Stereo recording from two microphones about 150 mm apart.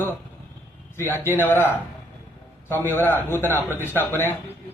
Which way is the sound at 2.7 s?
15° left (ahead or behind).